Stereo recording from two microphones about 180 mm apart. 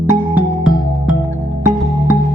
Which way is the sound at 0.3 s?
5° right (ahead or behind).